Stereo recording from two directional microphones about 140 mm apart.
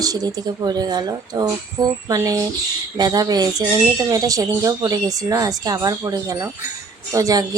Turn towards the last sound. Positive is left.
turn(degrees=-25)  # may be behind; listen again after turning